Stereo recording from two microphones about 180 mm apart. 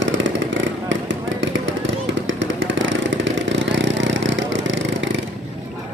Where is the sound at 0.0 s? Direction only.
90° right.